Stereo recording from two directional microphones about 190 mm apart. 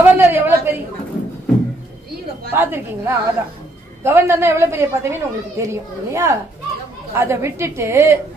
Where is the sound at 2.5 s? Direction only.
10° right (ahead or behind).